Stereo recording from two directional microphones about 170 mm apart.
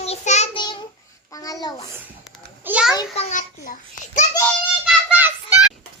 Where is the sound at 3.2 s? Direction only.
45° left (ahead or behind).